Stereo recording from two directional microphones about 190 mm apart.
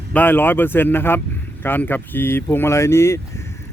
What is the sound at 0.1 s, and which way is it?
Speech, 10° left (ahead or behind).